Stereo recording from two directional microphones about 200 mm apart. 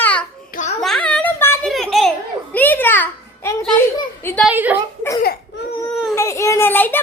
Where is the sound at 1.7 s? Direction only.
Centre (ahead or behind).